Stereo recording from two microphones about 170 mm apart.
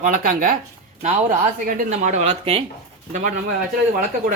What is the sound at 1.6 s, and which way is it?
Speech, 50° right (ahead or behind).